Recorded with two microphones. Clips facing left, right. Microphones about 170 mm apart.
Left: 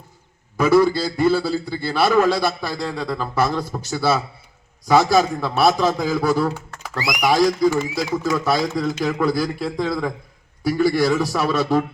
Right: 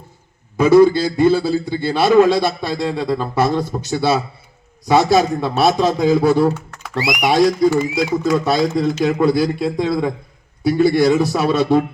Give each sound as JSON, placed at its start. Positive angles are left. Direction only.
{"t": 0.5, "sound": "a man's voice", "side_deg": -20}